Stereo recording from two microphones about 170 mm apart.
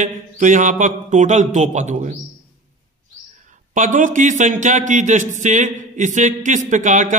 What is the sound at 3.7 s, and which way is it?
Speech, 50° right (ahead or behind).